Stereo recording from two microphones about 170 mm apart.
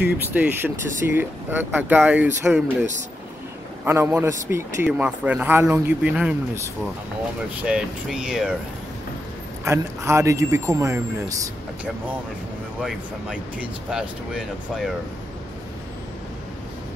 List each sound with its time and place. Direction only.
0.0 s a man's voice: 10° right (ahead or behind)
3.8 s a man's voice: 15° right (ahead or behind)
7.6 s speech: 5° right (ahead or behind)
9.7 s a man's voice: 15° right (ahead or behind)
12.8 s speech: 5° right (ahead or behind)